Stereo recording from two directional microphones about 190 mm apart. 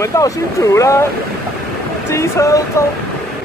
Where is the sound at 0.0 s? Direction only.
15° left (ahead or behind).